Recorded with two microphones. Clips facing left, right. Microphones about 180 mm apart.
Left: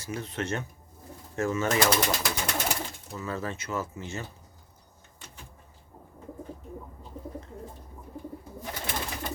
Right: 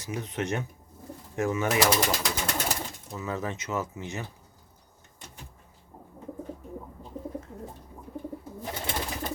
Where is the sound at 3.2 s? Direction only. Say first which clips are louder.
Right 1 dB; 15° right (ahead or behind).